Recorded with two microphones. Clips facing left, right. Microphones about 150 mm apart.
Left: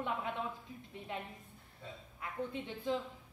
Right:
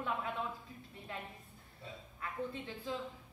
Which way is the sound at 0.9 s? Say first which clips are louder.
Left 3 dB; 20° left (ahead or behind).